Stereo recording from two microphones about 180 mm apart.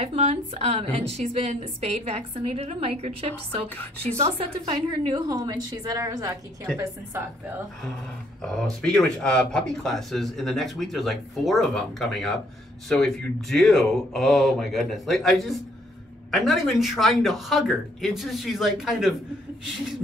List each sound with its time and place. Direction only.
0.0 s a woman's voice: 35° right (ahead or behind); by 7.5 s 15° right (ahead or behind)
8.4 s speech: 5° left (ahead or behind)